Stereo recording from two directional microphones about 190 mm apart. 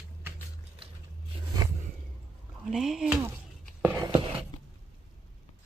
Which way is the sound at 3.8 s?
15° right (ahead or behind).